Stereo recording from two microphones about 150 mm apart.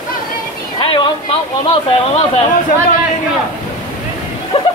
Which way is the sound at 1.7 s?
40° left (ahead or behind).